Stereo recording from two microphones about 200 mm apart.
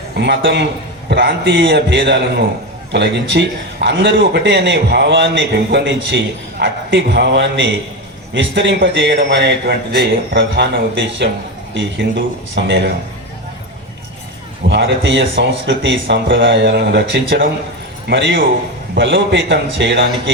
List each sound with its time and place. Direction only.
0.2 s a man's voice: 60° right (ahead or behind)
14.7 s a man's voice: 60° right (ahead or behind)